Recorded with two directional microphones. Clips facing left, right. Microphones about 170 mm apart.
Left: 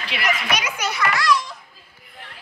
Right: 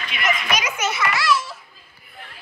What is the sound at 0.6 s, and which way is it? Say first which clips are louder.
Children playing: even; 5° right (ahead or behind).